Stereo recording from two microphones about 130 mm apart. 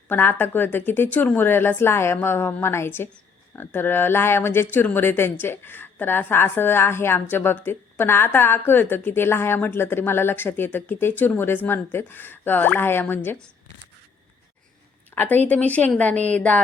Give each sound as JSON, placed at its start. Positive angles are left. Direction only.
{"t": 0.1, "sound": "speech", "side_deg": 15}
{"t": 15.1, "sound": "speech", "side_deg": 15}